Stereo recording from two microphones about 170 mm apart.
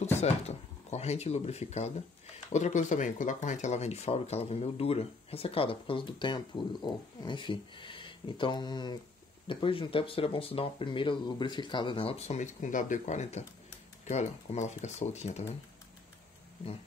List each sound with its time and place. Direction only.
0.2 s speech: 40° left (ahead or behind)